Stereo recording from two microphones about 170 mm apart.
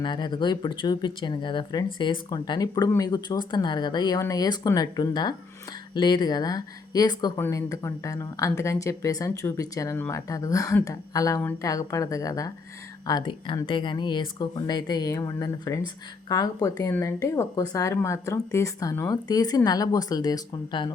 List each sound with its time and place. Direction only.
0.0 s speech: 25° left (ahead or behind)